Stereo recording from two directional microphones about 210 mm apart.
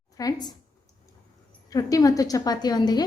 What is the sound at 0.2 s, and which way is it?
Speech, 20° left (ahead or behind).